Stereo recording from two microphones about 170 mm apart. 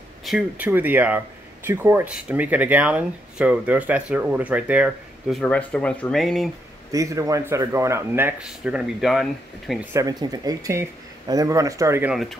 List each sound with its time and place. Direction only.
0.2 s speech: centre (ahead or behind)
0.7 s speech: 10° right (ahead or behind)
5.4 s speech: 10° left (ahead or behind)
6.9 s speech: 20° right (ahead or behind); by 9.8 s centre (ahead or behind)
9.9 s speech: 20° right (ahead or behind)